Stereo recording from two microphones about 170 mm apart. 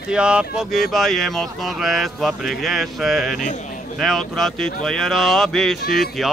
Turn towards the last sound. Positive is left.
turn(degrees=0)  # may be behind; listen again after turning